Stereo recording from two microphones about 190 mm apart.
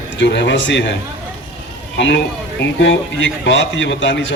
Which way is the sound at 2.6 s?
75° left (ahead or behind).